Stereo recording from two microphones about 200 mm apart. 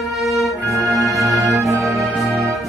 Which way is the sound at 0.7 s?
15° right (ahead or behind).